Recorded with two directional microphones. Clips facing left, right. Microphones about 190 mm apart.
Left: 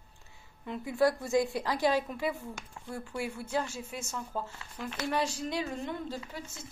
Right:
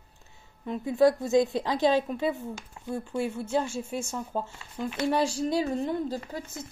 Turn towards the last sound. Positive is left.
turn(degrees=-45)  # may be behind; listen again after turning